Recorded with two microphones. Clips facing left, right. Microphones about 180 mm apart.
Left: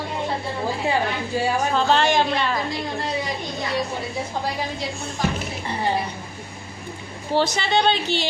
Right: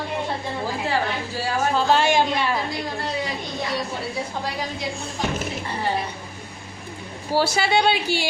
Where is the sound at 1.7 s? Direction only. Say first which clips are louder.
Right 1 dB; 10° right (ahead or behind).